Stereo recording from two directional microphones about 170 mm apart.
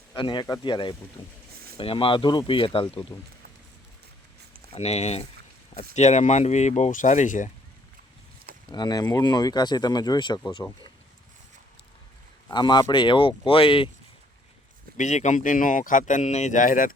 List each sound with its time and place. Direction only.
0.1 s speech: 25° left (ahead or behind)
3.1 s speech: 15° left (ahead or behind)
4.7 s speech: 40° left (ahead or behind)
8.7 s speech: 25° left (ahead or behind)
12.5 s speech: 25° left (ahead or behind)
14.9 s speech: 45° left (ahead or behind)